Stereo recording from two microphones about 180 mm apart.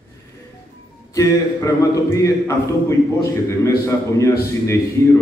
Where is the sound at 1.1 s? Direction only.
15° left (ahead or behind).